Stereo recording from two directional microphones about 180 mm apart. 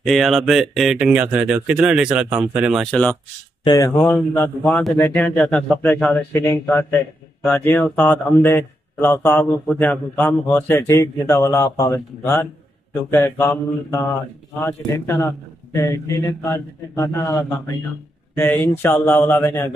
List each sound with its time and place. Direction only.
0.0 s speech: centre (ahead or behind)
3.6 s speech: 20° left (ahead or behind)
4.6 s speech: centre (ahead or behind)
6.3 s speech: 15° left (ahead or behind)
15.0 s a man's voice: 15° left (ahead or behind)